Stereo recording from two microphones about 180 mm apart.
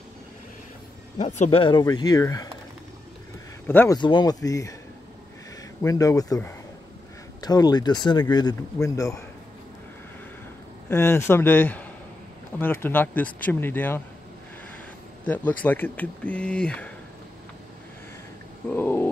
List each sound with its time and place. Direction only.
1.1 s speech: 40° left (ahead or behind); by 2.5 s 20° left (ahead or behind)
3.6 s speech: 10° left (ahead or behind)
4.0 s speech: 25° left (ahead or behind)
5.8 s speech: 20° left (ahead or behind)
10.9 s speech: 15° left (ahead or behind)
15.2 s speech: 10° left (ahead or behind)
18.7 s a sound: 10° left (ahead or behind)